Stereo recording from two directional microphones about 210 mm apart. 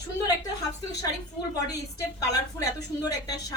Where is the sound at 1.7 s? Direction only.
15° left (ahead or behind).